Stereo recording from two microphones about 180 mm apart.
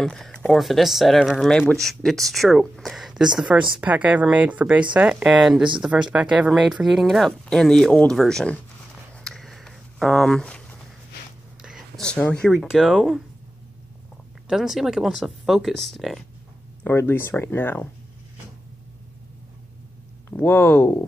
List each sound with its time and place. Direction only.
0.0 s speech: 5° left (ahead or behind)
9.2 s a sound: centre (ahead or behind)
11.6 s speech: centre (ahead or behind)
14.5 s speech: centre (ahead or behind)
16.8 s speech: 15° left (ahead or behind)
20.2 s speech: 10° left (ahead or behind)